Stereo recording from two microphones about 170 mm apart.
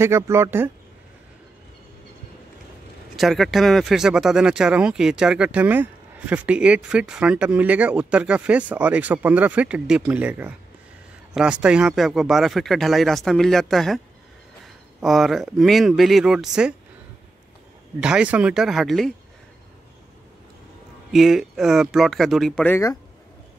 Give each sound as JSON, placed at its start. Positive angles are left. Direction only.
{"t": 0.0, "sound": "speech", "side_deg": -15}
{"t": 3.2, "sound": "speech", "side_deg": 0}
{"t": 18.0, "sound": "speech", "side_deg": -5}
{"t": 21.1, "sound": "speech", "side_deg": 0}
{"t": 22.7, "sound": "speech", "side_deg": 15}